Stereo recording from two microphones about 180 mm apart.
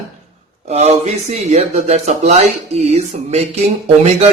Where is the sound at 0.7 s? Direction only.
35° right (ahead or behind).